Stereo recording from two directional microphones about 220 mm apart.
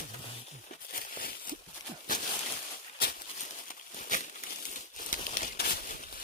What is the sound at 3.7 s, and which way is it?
Crumpling, 35° left (ahead or behind).